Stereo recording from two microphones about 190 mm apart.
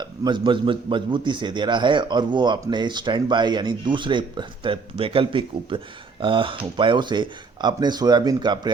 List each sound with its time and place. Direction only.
0.0 s a man's voice: 25° right (ahead or behind)